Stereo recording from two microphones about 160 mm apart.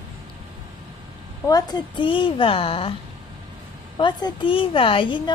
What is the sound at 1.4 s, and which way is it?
A woman's voice, 25° left (ahead or behind).